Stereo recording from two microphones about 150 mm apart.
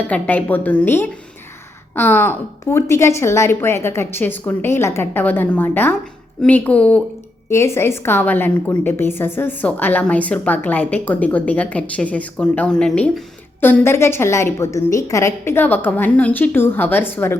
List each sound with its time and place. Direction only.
0.1 s a woman's voice: 10° left (ahead or behind)
13.6 s a woman's voice: 15° left (ahead or behind)